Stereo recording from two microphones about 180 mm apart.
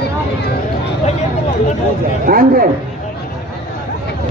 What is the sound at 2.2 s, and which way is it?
Speech, 55° right (ahead or behind).